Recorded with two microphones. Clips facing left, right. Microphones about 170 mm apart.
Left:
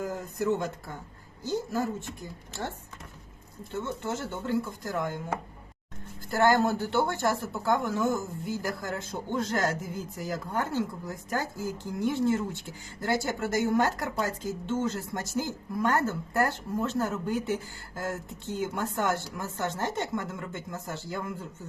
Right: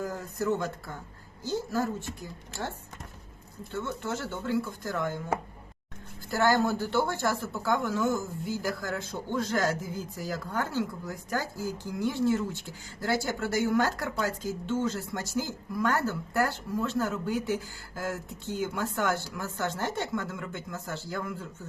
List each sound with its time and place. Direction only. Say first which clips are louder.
0.0 s a woman's voice: left 1 dB; 20° left (ahead or behind)
3.8 s speech: left 1 dB; 20° left (ahead or behind)
6.4 s speech: left 2 dB; 20° left (ahead or behind)
18.5 s speech: even; 20° left (ahead or behind)